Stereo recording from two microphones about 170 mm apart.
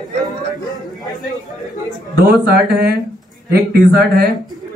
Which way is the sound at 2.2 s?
65° right (ahead or behind).